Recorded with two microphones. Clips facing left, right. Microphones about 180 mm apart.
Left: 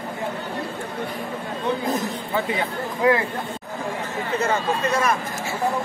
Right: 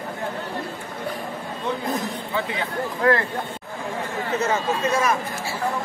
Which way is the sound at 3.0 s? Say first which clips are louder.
Left 1 dB; 15° left (ahead or behind).